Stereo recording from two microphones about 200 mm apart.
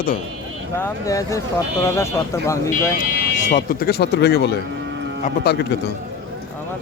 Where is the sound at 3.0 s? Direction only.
50° left (ahead or behind).